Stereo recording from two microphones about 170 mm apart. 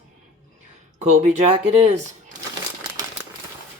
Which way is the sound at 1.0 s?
45° right (ahead or behind).